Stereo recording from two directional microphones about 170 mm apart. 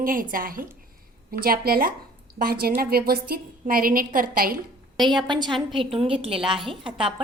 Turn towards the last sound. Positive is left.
turn(degrees=-30)  # may be behind; listen again after turning